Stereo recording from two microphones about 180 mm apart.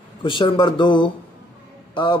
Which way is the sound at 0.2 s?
25° left (ahead or behind).